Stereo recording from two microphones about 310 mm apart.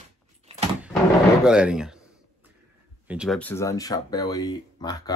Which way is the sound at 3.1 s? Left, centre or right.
Centre.